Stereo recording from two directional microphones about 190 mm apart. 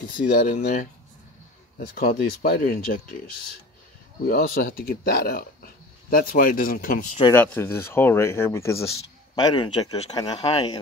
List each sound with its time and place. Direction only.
0.3 s speech: 55° left (ahead or behind)
4.3 s speech: 50° left (ahead or behind)
7.3 s speech: 10° left (ahead or behind)